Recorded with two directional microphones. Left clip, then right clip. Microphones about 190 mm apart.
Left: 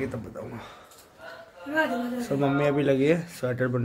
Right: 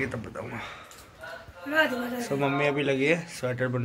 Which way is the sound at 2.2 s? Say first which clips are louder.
Left 1 dB; 45° left (ahead or behind).